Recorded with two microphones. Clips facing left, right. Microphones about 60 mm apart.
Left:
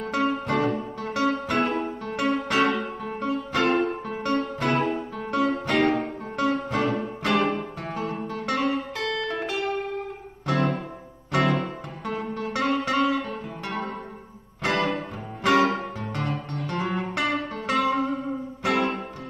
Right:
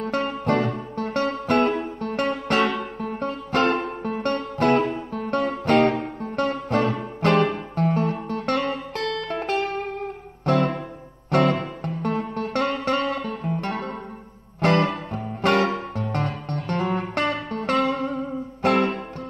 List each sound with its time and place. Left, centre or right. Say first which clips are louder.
0.0 s music: even; right
16.0 s music: right 2 dB; right